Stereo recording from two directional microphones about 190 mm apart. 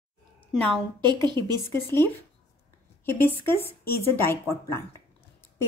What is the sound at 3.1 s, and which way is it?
Speech, 10° left (ahead or behind).